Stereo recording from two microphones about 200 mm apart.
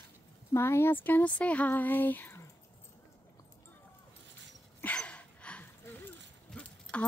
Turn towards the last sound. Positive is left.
turn(degrees=5)  # may be behind; listen again after turning